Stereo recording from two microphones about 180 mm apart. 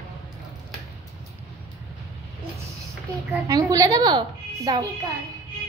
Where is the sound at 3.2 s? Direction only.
20° right (ahead or behind).